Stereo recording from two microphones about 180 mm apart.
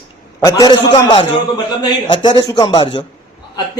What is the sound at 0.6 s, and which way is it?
A man's voice, 20° left (ahead or behind).